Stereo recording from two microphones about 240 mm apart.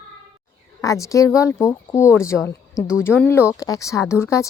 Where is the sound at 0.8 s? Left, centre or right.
Centre.